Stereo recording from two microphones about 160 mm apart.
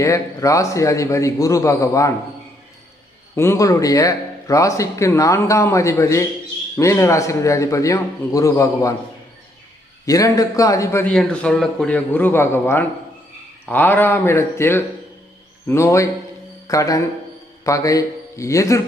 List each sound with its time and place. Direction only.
0.0 s speech: 20° left (ahead or behind)
3.3 s speech: 15° left (ahead or behind)
10.1 s speech: 20° left (ahead or behind)
11.1 s a man's voice: 5° left (ahead or behind)